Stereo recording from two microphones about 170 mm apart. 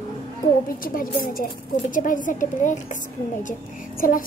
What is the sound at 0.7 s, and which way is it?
A woman's voice, 55° left (ahead or behind).